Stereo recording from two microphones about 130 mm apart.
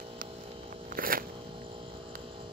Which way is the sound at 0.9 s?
90° right.